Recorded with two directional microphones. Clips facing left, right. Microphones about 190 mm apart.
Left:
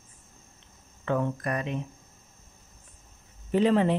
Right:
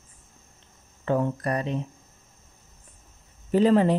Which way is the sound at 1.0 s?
35° right (ahead or behind).